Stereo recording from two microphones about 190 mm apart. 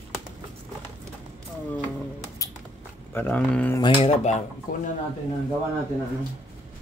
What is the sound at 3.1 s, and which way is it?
Speech, 10° left (ahead or behind).